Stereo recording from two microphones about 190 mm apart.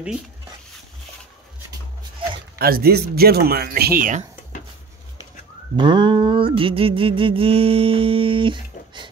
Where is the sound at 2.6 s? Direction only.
55° right (ahead or behind).